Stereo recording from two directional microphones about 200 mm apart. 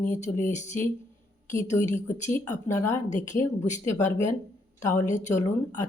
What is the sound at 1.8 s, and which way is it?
Speech, 35° left (ahead or behind).